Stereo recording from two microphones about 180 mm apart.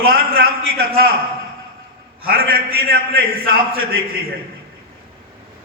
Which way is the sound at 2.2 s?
55° right (ahead or behind).